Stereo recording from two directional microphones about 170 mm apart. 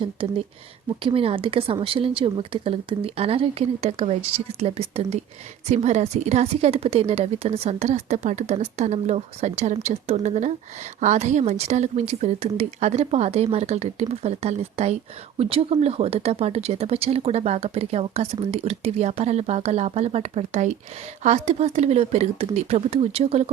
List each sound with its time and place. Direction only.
0.0 s speech: 30° right (ahead or behind)